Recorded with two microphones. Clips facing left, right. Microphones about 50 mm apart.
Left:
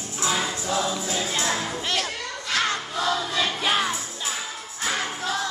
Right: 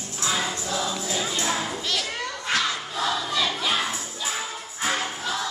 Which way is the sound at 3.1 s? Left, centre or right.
Centre.